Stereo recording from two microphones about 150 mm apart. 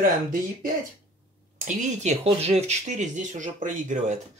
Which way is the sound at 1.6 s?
50° right (ahead or behind).